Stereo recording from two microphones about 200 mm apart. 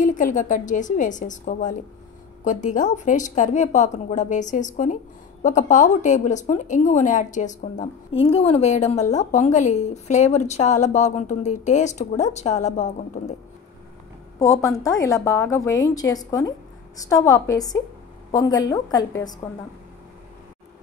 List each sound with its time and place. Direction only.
0.0 s a woman's voice: 40° left (ahead or behind)
14.4 s a woman's voice: 15° left (ahead or behind)